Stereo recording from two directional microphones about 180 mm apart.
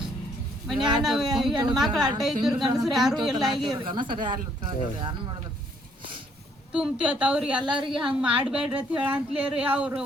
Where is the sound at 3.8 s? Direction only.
25° right (ahead or behind).